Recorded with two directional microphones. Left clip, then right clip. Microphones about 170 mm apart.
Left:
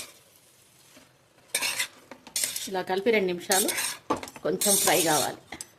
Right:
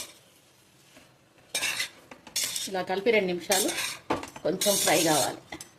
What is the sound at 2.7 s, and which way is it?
Speech, 15° left (ahead or behind).